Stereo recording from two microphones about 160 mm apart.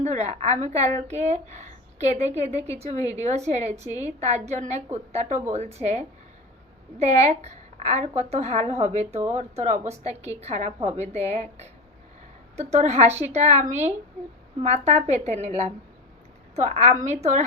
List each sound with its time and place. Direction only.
0.0 s a woman's voice: 45° right (ahead or behind)